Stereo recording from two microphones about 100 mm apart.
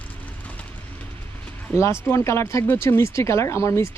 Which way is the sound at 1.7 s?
25° left (ahead or behind).